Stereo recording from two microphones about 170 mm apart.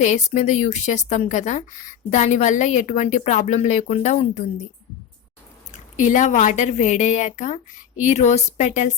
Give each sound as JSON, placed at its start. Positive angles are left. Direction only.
{"t": 0.0, "sound": "a woman's voice", "side_deg": 45}
{"t": 5.7, "sound": "a woman's voice", "side_deg": 45}